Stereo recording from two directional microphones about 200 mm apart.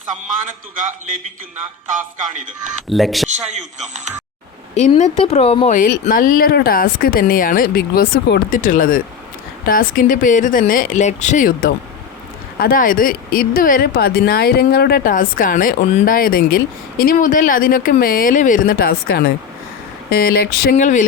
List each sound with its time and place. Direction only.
0.4 s speech: 40° right (ahead or behind)
2.9 s speech: centre (ahead or behind)
3.2 s speech: 35° right (ahead or behind)
4.9 s speech: 30° left (ahead or behind); by 20.7 s 50° left (ahead or behind)
20.7 s speech: 40° left (ahead or behind)